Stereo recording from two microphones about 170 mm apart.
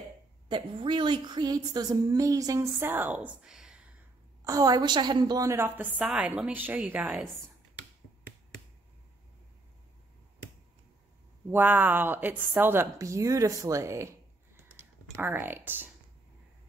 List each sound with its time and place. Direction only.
0.5 s a woman's voice: 30° right (ahead or behind); by 3.8 s 5° right (ahead or behind)
4.5 s a woman's voice: 20° right (ahead or behind)
11.5 s a woman's voice: 10° right (ahead or behind)